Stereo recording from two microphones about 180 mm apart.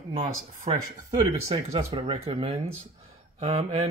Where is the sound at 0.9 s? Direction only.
20° right (ahead or behind).